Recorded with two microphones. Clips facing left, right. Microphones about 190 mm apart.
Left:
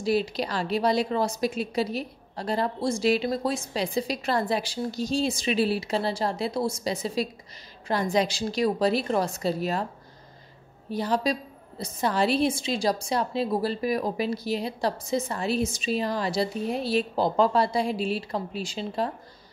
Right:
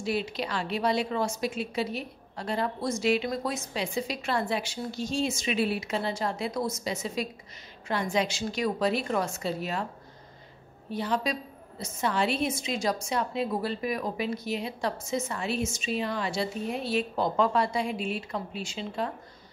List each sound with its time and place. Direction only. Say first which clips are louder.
0.0 s a woman's voice: left 5 dB; 35° left (ahead or behind)
10.9 s a woman's voice: left 3 dB; 40° left (ahead or behind)